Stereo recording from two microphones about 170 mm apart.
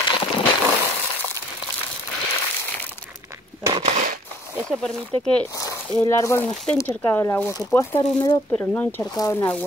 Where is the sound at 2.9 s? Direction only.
10° right (ahead or behind).